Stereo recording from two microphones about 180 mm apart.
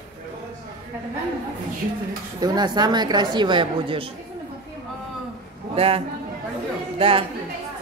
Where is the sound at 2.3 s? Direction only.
20° right (ahead or behind).